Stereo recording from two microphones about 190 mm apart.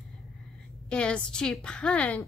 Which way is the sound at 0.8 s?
5° left (ahead or behind).